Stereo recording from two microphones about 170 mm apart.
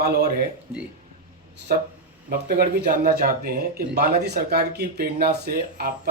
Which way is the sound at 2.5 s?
60° right (ahead or behind).